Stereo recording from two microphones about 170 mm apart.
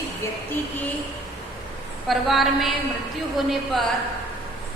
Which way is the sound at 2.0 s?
Centre (ahead or behind).